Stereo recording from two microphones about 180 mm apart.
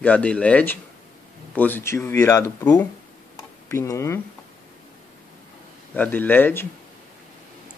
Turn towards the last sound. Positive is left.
turn(degrees=10)  # may be behind; listen again after turning